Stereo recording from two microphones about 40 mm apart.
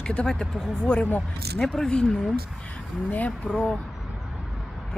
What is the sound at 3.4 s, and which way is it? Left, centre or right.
Speech, right.